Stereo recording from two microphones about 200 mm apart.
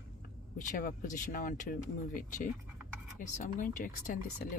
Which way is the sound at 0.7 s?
45° left (ahead or behind).